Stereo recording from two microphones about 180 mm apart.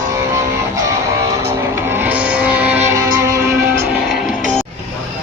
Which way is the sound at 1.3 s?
15° right (ahead or behind).